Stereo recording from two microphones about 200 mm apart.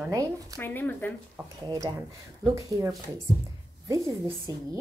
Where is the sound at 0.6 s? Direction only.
10° left (ahead or behind).